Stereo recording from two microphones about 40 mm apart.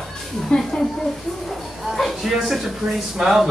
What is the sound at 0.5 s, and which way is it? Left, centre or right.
Speech, left.